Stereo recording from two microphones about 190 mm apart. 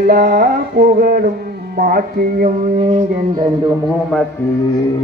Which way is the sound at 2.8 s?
30° right (ahead or behind).